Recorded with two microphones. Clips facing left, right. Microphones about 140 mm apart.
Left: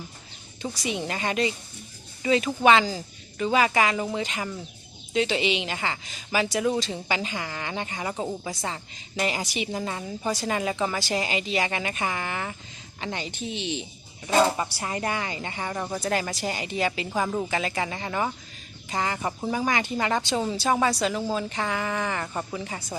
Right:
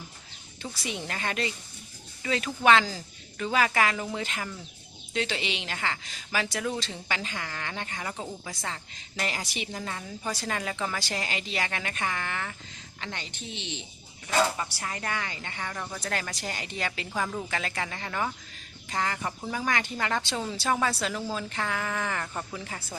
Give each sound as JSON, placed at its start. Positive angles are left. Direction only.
{"t": 0.6, "sound": "a woman's voice", "side_deg": 0}
{"t": 8.1, "sound": "a woman's voice", "side_deg": 30}
{"t": 8.6, "sound": "a woman's voice", "side_deg": 5}
{"t": 10.3, "sound": "a woman's voice", "side_deg": 0}
{"t": 10.6, "sound": "a woman's voice", "side_deg": 10}
{"t": 14.3, "sound": "a woman's voice", "side_deg": 30}
{"t": 16.3, "sound": "a woman's voice", "side_deg": 5}
{"t": 17.1, "sound": "a woman's voice", "side_deg": 20}
{"t": 17.5, "sound": "a woman's voice", "side_deg": 5}